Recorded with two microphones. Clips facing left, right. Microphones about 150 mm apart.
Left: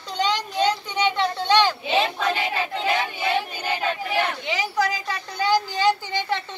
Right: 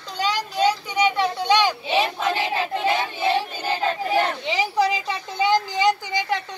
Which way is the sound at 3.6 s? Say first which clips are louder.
Right 2 dB; 35° right (ahead or behind).